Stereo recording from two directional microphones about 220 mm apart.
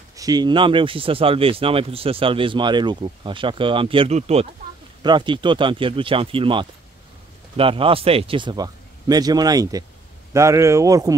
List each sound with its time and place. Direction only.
0.1 s speech: 15° right (ahead or behind)